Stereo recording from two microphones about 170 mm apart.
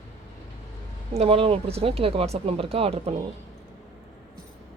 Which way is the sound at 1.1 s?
35° right (ahead or behind).